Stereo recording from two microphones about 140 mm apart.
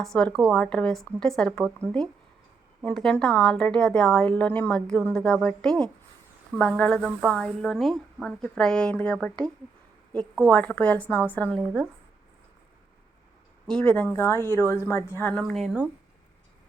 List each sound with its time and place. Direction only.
0.0 s a woman's voice: 5° left (ahead or behind)
10.5 s a woman's voice: 10° left (ahead or behind)
13.7 s a woman's voice: 10° left (ahead or behind)
15.3 s speech: 5° left (ahead or behind)